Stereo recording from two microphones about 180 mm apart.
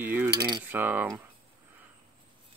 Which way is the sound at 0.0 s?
10° right (ahead or behind).